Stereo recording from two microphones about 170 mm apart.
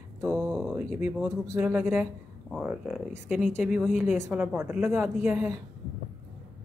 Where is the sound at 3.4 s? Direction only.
45° left (ahead or behind).